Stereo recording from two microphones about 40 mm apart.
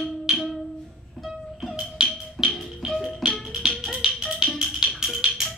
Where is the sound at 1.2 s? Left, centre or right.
Centre.